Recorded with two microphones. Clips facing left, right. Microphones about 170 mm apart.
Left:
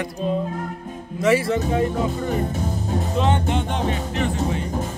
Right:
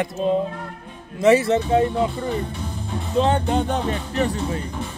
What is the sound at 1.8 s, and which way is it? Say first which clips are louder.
Music: right 1 dB; 45° left (ahead or behind).